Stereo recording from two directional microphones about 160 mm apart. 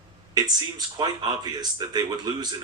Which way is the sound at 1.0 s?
25° right (ahead or behind).